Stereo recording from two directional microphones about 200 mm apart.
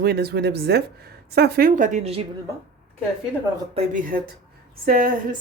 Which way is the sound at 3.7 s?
40° right (ahead or behind).